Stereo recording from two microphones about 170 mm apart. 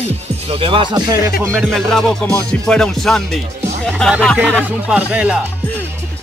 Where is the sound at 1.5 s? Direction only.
Centre (ahead or behind).